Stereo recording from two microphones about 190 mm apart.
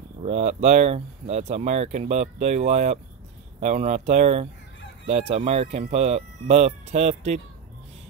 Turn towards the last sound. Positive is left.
turn(degrees=-35)  # may be behind; listen again after turning